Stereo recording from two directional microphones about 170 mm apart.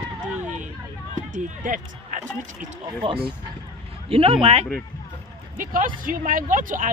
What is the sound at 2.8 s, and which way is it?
Speech, 30° right (ahead or behind).